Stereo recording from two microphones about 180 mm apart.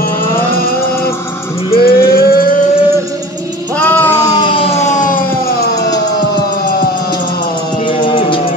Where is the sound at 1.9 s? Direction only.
60° left (ahead or behind).